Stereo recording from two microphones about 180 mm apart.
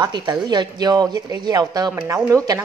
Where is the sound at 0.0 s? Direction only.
25° right (ahead or behind).